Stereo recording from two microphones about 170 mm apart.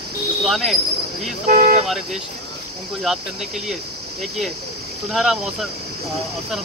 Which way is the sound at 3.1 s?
Centre (ahead or behind).